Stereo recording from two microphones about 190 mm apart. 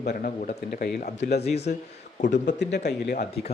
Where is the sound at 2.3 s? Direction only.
70° left (ahead or behind).